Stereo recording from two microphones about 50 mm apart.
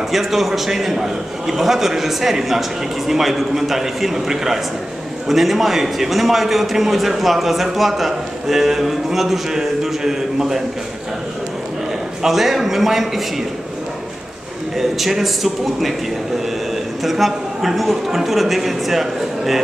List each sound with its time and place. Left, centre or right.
0.1 s a man's voice: centre
12.2 s a man's voice: centre
14.8 s a man's voice: centre
17.0 s a man's voice: centre